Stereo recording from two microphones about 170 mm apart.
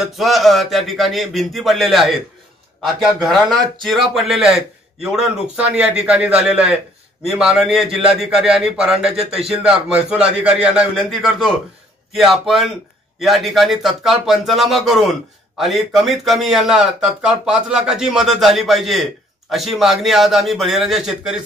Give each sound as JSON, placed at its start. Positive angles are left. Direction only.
{"t": 0.0, "sound": "speech", "side_deg": 0}
{"t": 9.2, "sound": "a man's voice", "side_deg": -35}
{"t": 9.5, "sound": "speech", "side_deg": -5}